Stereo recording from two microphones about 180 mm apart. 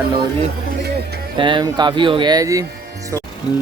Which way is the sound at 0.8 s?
65° right (ahead or behind).